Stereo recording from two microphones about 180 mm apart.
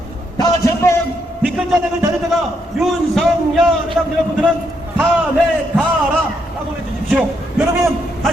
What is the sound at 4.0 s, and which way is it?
Speech, 10° right (ahead or behind).